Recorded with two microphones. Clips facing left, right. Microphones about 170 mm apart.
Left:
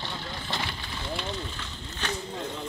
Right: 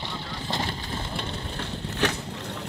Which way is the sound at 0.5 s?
40° right (ahead or behind).